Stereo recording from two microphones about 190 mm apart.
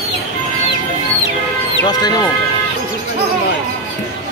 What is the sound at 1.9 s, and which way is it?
Speech, 20° left (ahead or behind).